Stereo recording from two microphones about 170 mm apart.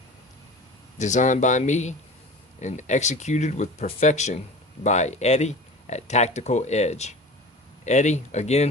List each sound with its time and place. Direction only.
0.9 s speech: 45° left (ahead or behind)